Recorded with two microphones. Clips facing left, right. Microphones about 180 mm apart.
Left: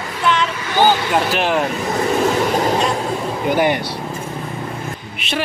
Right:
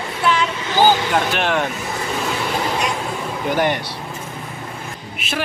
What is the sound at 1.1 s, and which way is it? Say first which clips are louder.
Speech: left 2 dB; 5° left (ahead or behind).